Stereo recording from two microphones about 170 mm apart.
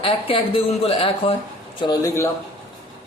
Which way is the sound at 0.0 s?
35° left (ahead or behind).